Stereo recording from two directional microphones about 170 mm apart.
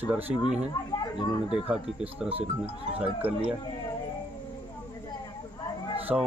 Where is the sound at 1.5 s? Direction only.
5° right (ahead or behind).